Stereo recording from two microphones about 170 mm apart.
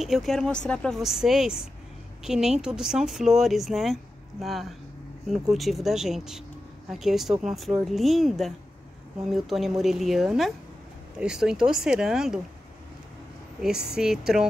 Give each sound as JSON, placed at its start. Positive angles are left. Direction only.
{"t": 0.0, "sound": "speech", "side_deg": 0}
{"t": 13.9, "sound": "speech", "side_deg": -5}